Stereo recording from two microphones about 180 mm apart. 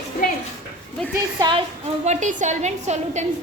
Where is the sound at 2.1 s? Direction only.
40° right (ahead or behind).